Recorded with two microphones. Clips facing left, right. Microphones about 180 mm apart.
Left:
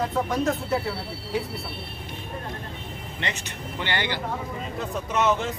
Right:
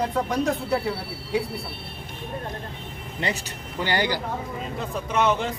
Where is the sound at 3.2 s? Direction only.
35° right (ahead or behind).